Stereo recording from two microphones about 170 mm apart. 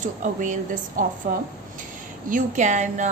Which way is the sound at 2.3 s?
45° right (ahead or behind).